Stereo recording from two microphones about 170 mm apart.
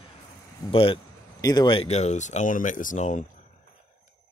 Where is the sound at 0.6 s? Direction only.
30° left (ahead or behind); by 3.2 s 45° left (ahead or behind).